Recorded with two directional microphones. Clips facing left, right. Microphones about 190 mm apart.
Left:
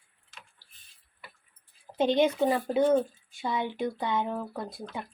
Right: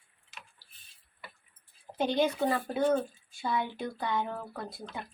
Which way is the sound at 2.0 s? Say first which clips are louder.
Left 4 dB; 20° left (ahead or behind).